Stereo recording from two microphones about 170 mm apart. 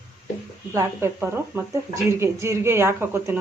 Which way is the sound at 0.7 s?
15° right (ahead or behind).